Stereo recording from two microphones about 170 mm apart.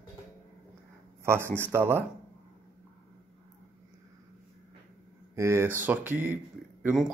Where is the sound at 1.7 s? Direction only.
15° right (ahead or behind).